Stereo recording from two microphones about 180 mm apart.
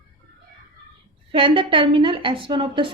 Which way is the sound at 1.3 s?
30° right (ahead or behind).